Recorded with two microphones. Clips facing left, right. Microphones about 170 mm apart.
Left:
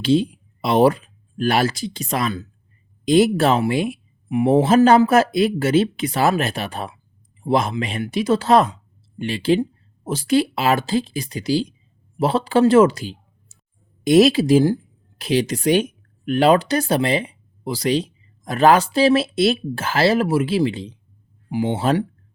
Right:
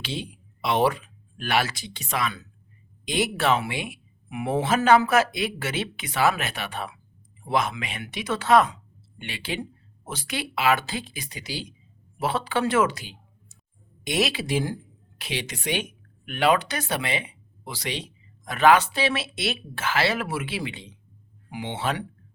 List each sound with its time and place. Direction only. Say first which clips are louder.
0.0 s speech: left 16 dB; 40° left (ahead or behind)